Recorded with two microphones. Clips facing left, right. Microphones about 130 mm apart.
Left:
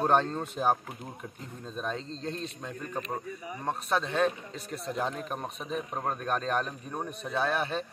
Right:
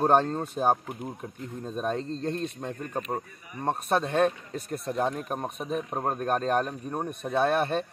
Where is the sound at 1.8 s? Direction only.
50° right (ahead or behind).